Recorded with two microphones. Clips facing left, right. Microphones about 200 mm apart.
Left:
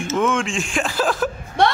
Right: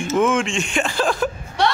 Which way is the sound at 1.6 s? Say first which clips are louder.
Left 2 dB; 50° left (ahead or behind).